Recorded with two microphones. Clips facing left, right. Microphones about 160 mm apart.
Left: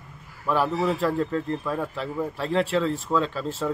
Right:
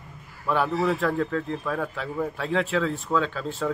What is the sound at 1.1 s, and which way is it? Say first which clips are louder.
Speech: left 1 dB; 30° left (ahead or behind).